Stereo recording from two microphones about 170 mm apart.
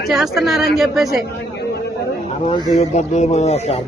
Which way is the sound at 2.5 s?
40° left (ahead or behind).